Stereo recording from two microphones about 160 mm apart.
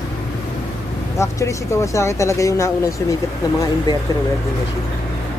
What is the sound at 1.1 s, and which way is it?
Speech, 15° left (ahead or behind).